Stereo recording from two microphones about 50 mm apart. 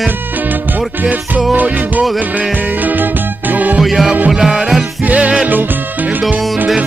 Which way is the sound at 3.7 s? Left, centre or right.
Centre.